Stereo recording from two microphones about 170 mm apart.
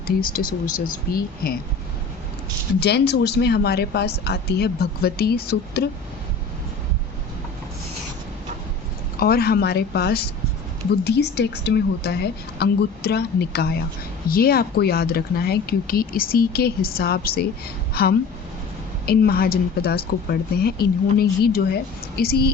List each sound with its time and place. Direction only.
0.2 s speech: 60° left (ahead or behind)
2.8 s a woman's voice: 80° left
9.1 s a woman's voice: 60° left (ahead or behind)